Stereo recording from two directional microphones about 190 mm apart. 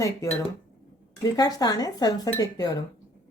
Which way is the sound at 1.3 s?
20° left (ahead or behind).